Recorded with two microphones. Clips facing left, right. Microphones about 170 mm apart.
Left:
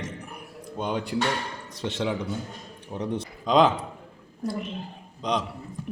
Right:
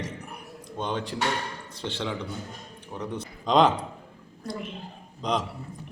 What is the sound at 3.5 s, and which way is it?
Speech, centre (ahead or behind).